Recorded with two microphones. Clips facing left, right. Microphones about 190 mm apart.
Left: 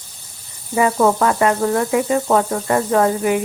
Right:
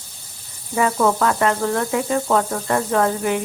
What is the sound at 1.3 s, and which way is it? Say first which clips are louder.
Speech: left 3 dB; 10° left (ahead or behind).